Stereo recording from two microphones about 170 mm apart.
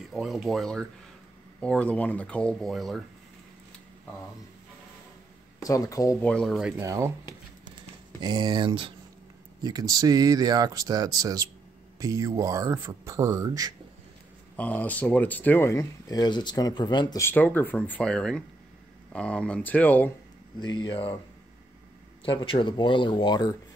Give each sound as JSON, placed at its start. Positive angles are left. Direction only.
{"t": 0.0, "sound": "speech", "side_deg": 0}
{"t": 5.6, "sound": "speech", "side_deg": 20}
{"t": 6.2, "sound": "speech", "side_deg": 5}
{"t": 6.8, "sound": "speech", "side_deg": -15}
{"t": 14.6, "sound": "speech", "side_deg": 10}
{"t": 17.2, "sound": "speech", "side_deg": 10}
{"t": 20.6, "sound": "speech", "side_deg": 25}
{"t": 22.2, "sound": "speech", "side_deg": 30}